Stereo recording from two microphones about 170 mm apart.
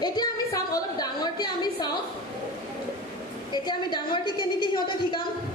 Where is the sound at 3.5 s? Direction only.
25° left (ahead or behind).